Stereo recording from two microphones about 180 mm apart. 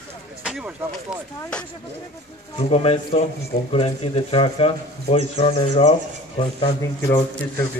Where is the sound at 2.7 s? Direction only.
35° left (ahead or behind).